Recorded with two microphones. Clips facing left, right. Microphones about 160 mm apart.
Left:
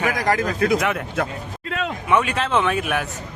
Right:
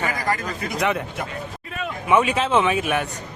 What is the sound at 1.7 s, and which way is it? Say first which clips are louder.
Speech: left 5 dB; 75° left (ahead or behind).